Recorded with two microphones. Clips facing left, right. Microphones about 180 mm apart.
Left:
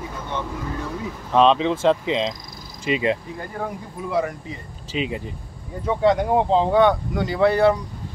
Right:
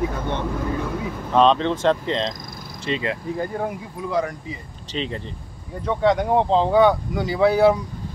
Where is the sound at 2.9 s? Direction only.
15° left (ahead or behind).